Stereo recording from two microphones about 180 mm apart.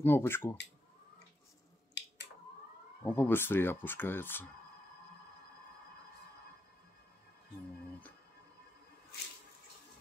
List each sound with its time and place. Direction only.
0.0 s speech: 10° left (ahead or behind)
2.0 s finger snapping: 75° left (ahead or behind)
3.0 s speech: 10° left (ahead or behind)